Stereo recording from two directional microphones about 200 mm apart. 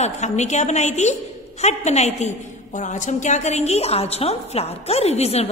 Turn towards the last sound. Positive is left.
turn(degrees=30)  # may be behind; listen again after turning